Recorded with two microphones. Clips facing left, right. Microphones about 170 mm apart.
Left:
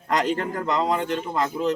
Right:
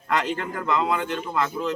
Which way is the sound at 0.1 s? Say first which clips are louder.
Left 2 dB; 40° left (ahead or behind).